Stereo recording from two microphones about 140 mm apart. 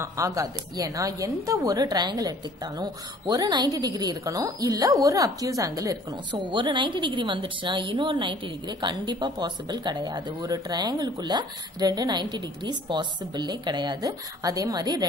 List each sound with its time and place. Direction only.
0.0 s a woman's voice: 25° right (ahead or behind)
6.3 s a woman's voice: 35° right (ahead or behind)